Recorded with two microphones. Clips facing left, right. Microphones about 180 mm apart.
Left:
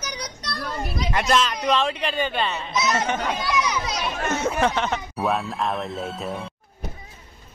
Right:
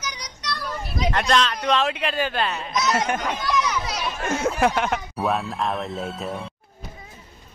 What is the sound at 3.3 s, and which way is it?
Children playing, 10° left (ahead or behind).